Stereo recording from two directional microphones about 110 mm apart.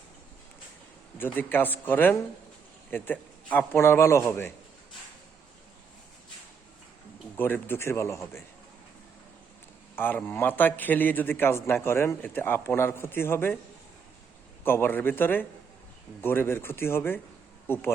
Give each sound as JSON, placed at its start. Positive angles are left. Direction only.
{"t": 1.2, "sound": "a man's voice", "side_deg": 20}
{"t": 7.3, "sound": "a man's voice", "side_deg": 20}
{"t": 9.9, "sound": "a man's voice", "side_deg": 20}
{"t": 14.6, "sound": "a man's voice", "side_deg": 20}